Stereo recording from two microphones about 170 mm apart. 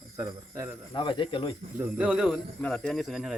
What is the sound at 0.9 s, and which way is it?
Speech, 30° left (ahead or behind).